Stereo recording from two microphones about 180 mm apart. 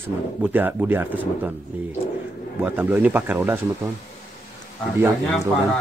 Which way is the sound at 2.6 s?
10° right (ahead or behind).